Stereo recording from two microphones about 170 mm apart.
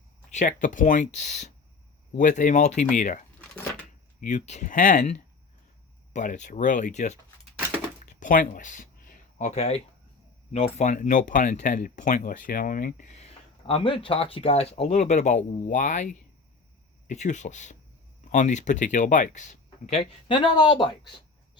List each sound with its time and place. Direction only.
0.3 s speech: 45° left (ahead or behind)
6.1 s speech: 45° left (ahead or behind)
8.0 s a sound: 50° left (ahead or behind)
10.5 s speech: 40° left (ahead or behind)
13.7 s speech: 35° left (ahead or behind)